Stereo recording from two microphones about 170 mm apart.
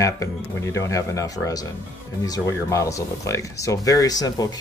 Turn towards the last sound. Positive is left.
turn(degrees=20)  # may be behind; listen again after turning